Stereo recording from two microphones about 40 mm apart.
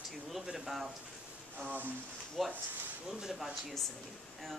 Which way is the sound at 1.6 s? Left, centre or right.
Right.